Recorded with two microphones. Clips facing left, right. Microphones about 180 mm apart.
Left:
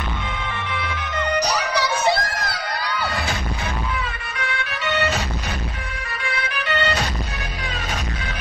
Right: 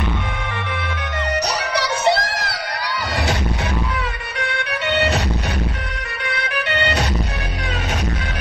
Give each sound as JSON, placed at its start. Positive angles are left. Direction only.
{"t": 1.5, "sound": "music", "side_deg": -70}
{"t": 4.6, "sound": "music", "side_deg": -70}